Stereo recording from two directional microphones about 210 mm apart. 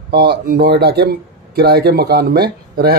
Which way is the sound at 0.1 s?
50° right (ahead or behind).